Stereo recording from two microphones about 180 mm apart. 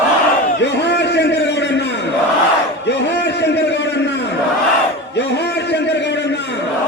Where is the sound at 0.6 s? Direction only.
75° left (ahead or behind).